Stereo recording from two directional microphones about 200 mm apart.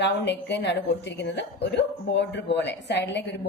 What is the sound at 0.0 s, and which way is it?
A woman's voice, 60° left (ahead or behind).